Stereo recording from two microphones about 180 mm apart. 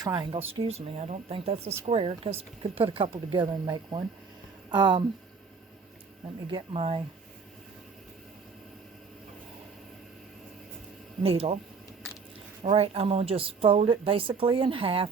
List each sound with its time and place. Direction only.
0.0 s a woman's voice: 25° right (ahead or behind)
6.5 s a woman's voice: 30° right (ahead or behind)
11.2 s a woman's voice: 35° right (ahead or behind)
12.6 s a woman's voice: 35° right (ahead or behind)